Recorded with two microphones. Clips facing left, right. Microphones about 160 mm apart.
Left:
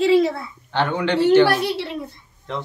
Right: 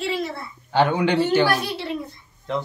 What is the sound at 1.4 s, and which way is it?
Speech, 70° left (ahead or behind).